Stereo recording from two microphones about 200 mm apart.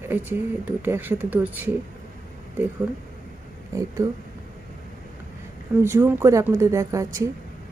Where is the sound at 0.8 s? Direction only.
10° right (ahead or behind).